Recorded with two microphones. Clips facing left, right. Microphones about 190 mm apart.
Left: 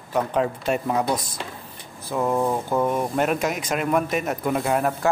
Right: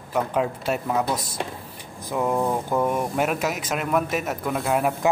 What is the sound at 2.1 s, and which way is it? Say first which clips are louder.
Speech: left 1 dB; 10° right (ahead or behind).